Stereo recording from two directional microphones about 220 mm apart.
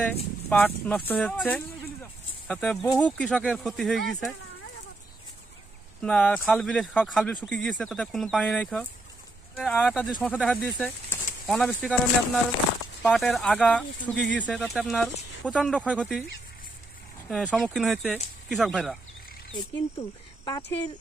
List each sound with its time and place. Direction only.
0.5 s speech: 10° left (ahead or behind)
5.9 s speech: 5° left (ahead or behind)
13.0 s speech: centre (ahead or behind)
17.3 s speech: centre (ahead or behind)
19.5 s speech: 20° left (ahead or behind)